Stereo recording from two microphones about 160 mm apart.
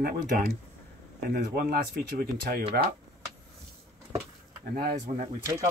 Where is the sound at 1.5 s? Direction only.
65° right (ahead or behind).